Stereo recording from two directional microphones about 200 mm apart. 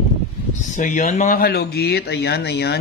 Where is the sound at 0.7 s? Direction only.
40° left (ahead or behind).